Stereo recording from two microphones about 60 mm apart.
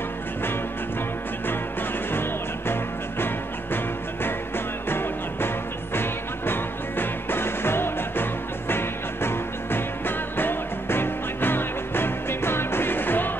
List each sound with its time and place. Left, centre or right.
1.5 s music: left
4.8 s music: left